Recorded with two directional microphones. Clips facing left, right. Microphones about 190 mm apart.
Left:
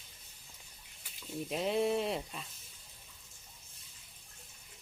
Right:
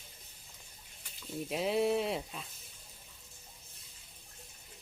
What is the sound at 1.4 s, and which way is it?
Speech, centre (ahead or behind).